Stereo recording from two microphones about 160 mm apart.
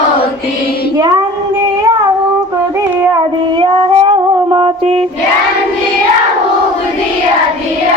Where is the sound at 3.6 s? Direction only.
30° right (ahead or behind).